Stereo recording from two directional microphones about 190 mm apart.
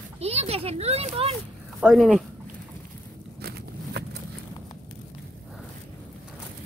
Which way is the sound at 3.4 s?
60° right (ahead or behind).